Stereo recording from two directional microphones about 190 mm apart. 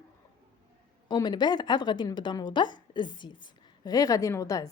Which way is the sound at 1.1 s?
20° left (ahead or behind).